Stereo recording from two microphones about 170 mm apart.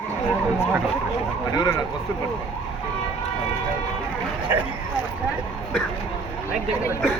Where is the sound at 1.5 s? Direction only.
20° left (ahead or behind).